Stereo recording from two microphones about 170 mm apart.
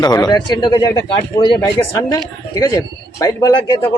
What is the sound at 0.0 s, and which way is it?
Speech, 25° left (ahead or behind).